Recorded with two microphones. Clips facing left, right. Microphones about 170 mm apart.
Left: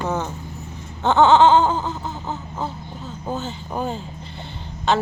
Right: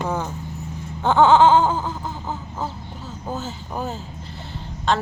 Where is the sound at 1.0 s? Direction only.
10° right (ahead or behind).